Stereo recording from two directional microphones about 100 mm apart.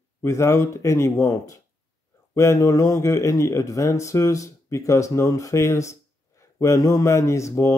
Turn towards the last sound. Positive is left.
turn(degrees=30)  # may be behind; listen again after turning